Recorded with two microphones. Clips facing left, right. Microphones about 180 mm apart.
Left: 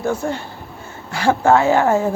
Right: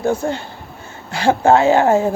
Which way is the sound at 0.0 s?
25° right (ahead or behind).